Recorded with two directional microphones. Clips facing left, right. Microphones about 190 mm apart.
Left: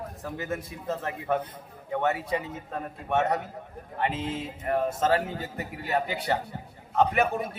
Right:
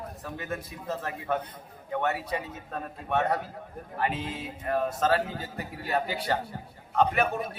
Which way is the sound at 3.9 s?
25° left (ahead or behind).